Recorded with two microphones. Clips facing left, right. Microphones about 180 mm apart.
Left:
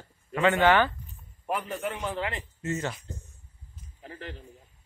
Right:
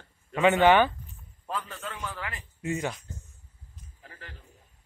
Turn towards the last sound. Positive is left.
turn(degrees=20)  # may be behind; listen again after turning